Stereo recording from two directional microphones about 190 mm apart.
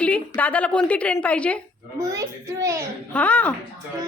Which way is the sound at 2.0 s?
15° right (ahead or behind).